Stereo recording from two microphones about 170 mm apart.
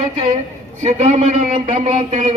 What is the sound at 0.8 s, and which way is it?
A man's voice, 40° right (ahead or behind).